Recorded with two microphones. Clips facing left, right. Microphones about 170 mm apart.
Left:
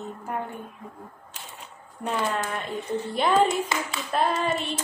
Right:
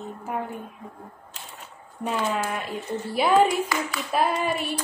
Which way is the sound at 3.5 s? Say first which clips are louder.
Right 1 dB; 25° left (ahead or behind).